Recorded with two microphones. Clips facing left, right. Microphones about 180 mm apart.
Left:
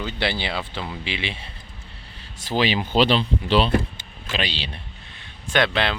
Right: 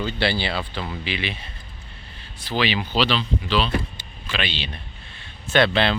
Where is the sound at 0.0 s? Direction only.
20° left (ahead or behind).